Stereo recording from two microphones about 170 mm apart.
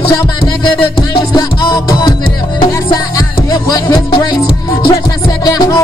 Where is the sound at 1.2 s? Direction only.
25° left (ahead or behind).